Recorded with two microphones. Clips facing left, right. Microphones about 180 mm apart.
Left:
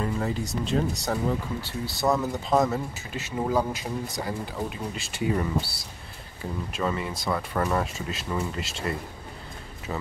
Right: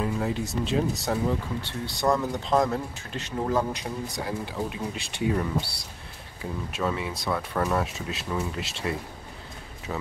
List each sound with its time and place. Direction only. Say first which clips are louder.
0.0 s speech: right 1 dB; centre (ahead or behind)